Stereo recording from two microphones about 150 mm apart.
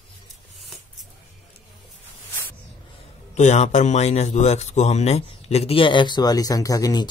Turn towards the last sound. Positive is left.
turn(degrees=25)  # may be behind; listen again after turning